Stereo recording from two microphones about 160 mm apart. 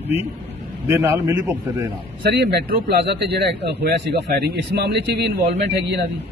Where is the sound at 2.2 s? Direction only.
90° right.